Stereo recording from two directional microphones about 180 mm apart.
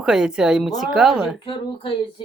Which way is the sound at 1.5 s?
30° left (ahead or behind).